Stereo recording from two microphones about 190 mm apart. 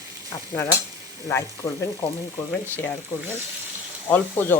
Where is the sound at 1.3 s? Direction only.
15° left (ahead or behind).